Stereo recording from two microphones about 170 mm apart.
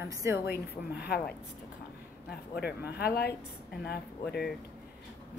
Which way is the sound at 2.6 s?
65° left (ahead or behind).